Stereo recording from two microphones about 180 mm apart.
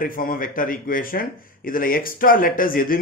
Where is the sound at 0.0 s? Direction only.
50° left (ahead or behind).